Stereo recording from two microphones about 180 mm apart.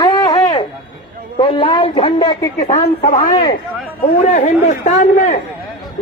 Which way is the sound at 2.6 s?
40° left (ahead or behind).